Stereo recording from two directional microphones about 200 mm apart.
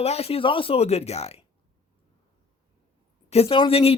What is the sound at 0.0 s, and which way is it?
A man's voice, 30° left (ahead or behind).